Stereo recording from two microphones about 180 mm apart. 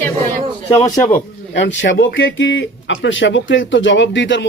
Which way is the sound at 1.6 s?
85° left.